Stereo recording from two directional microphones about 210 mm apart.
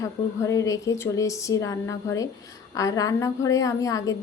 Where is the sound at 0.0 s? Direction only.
15° left (ahead or behind).